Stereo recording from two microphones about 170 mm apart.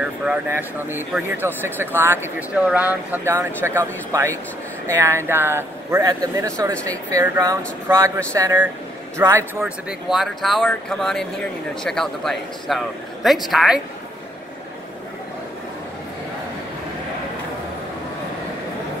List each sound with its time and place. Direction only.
0.0 s speech: 5° right (ahead or behind)